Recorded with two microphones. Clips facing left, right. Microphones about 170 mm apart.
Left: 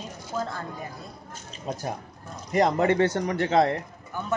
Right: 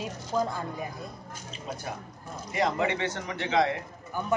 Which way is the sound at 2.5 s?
45° left (ahead or behind).